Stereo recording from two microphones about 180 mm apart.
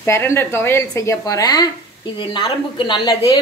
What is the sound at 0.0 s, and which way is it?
A woman's voice, 15° left (ahead or behind).